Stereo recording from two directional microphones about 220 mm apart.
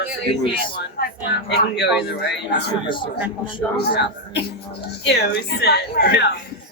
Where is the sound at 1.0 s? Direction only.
45° left (ahead or behind).